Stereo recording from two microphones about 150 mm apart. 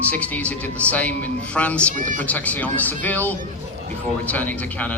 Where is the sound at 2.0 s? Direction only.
60° right (ahead or behind).